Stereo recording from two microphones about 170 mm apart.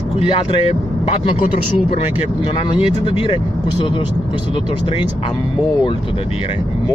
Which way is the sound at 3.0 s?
35° left (ahead or behind).